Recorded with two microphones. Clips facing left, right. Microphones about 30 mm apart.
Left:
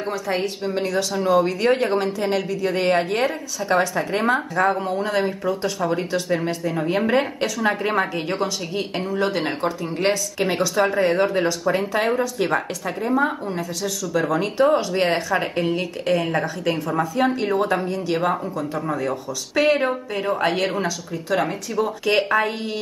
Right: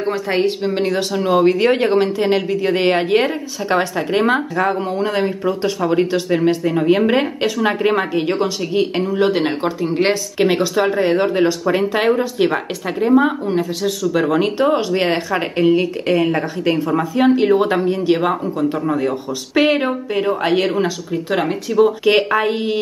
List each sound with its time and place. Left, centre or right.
0.7 s a woman's voice: right
5.4 s speech: right
5.8 s a woman's voice: centre
9.1 s speech: right
10.4 s speech: right
19.8 s a woman's voice: centre
20.8 s speech: right